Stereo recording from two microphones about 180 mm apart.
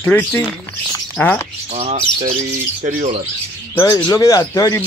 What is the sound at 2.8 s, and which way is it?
Speech, 45° right (ahead or behind).